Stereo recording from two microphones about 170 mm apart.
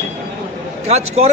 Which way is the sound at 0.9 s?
40° right (ahead or behind).